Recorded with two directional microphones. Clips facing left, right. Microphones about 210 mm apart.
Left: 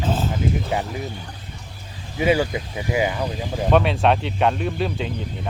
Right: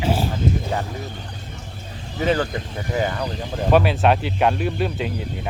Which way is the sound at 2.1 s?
10° left (ahead or behind).